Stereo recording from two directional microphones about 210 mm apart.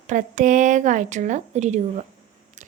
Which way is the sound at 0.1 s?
35° right (ahead or behind).